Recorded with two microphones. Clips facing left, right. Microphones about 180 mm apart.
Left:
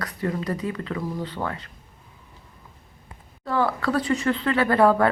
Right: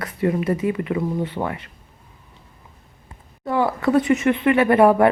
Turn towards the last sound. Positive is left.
turn(degrees=-20)  # may be behind; listen again after turning